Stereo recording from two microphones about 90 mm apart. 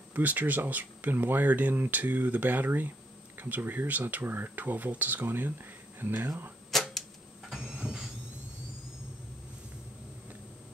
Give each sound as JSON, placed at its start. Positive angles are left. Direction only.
{"t": 0.1, "sound": "speech", "side_deg": -20}
{"t": 6.7, "sound": "clock", "side_deg": 0}